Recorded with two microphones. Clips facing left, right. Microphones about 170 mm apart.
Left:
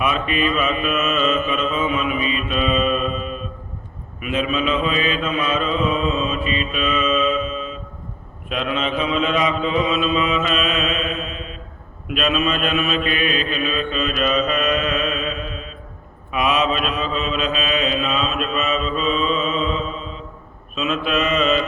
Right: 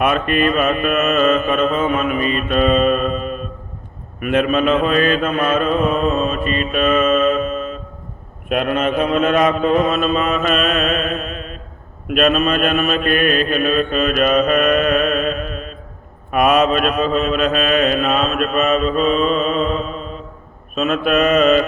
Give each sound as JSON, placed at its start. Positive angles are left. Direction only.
{"t": 0.0, "sound": "mantra", "side_deg": -55}